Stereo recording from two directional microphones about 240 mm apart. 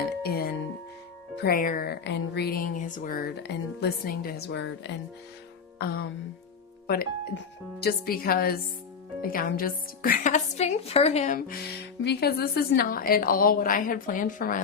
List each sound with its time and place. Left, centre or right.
0.2 s music: left
1.5 s speech: left